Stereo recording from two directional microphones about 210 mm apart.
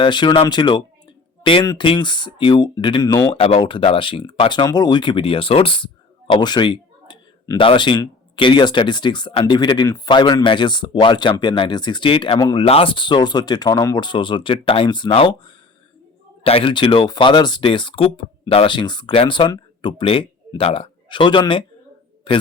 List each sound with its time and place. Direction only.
0.0 s speech: 20° left (ahead or behind)